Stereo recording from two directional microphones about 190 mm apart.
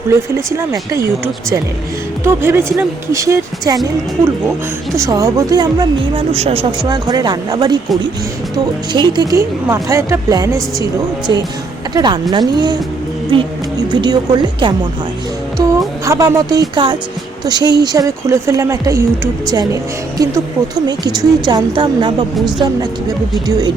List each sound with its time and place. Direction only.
0.1 s speech: 15° right (ahead or behind)
4.9 s speech: 15° right (ahead or behind)
6.3 s speech: 30° right (ahead or behind)
16.0 s speech: 15° right (ahead or behind)
22.4 s a woman's voice: centre (ahead or behind)
23.5 s speech: 20° right (ahead or behind)